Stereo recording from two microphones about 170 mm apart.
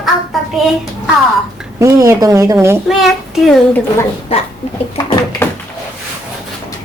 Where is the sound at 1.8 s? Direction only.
15° right (ahead or behind).